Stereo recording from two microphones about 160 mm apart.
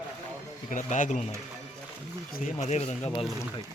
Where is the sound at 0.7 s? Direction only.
55° left (ahead or behind).